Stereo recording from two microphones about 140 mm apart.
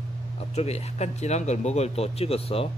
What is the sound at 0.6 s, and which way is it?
Speech, 50° left (ahead or behind).